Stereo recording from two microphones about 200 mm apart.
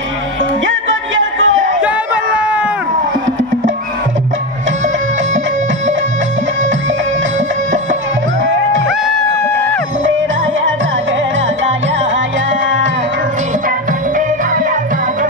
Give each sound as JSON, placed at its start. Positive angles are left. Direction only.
{"t": 0.7, "sound": "music", "side_deg": -70}